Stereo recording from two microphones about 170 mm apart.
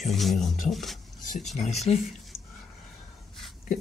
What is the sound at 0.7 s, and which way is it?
Speech, centre (ahead or behind).